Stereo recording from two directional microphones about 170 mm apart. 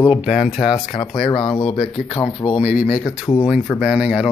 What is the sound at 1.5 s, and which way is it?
Speech, 40° left (ahead or behind).